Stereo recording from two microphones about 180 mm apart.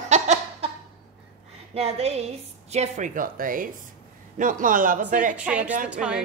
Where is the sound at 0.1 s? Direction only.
40° right (ahead or behind).